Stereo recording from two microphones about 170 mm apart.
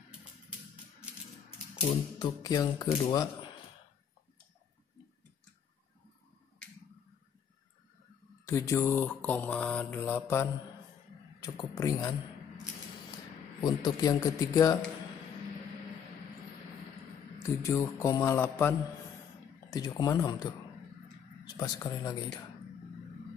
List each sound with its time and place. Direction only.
1.9 s speech: 25° left (ahead or behind)
8.5 s speech: 15° left (ahead or behind)
13.6 s speech: 25° left (ahead or behind)
17.4 s speech: 15° left (ahead or behind)
21.5 s speech: 25° left (ahead or behind)